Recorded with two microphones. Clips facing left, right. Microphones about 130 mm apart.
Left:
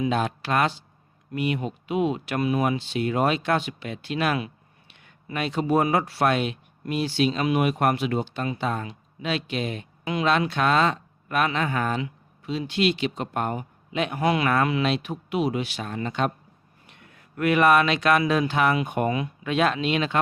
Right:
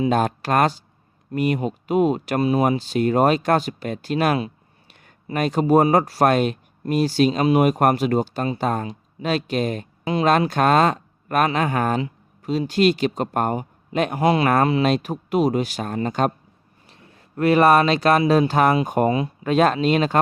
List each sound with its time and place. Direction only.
0.1 s speech: 45° right (ahead or behind)
16.9 s speech: 30° right (ahead or behind)